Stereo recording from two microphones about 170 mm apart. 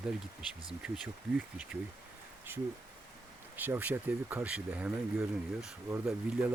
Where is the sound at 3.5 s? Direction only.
10° right (ahead or behind).